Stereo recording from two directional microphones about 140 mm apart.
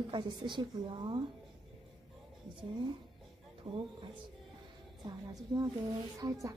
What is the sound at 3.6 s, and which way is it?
Speech, 40° right (ahead or behind).